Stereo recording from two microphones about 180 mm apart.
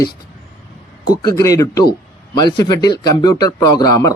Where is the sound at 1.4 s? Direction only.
15° left (ahead or behind).